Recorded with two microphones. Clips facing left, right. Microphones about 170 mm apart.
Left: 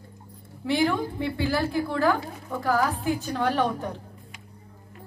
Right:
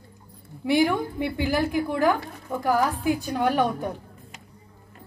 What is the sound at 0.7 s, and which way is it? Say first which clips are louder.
A woman's voice: right 2 dB; 15° right (ahead or behind).